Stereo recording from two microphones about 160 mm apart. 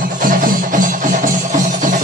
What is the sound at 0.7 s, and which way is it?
Music, 55° right (ahead or behind).